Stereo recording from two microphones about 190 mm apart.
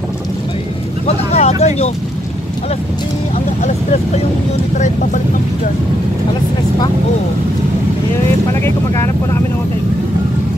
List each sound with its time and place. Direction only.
1.0 s speech: 35° left (ahead or behind)
4.7 s speech: 40° left (ahead or behind)
8.6 s speech: 15° left (ahead or behind)